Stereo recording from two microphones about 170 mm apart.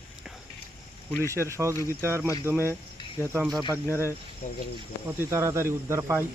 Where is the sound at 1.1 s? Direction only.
10° left (ahead or behind).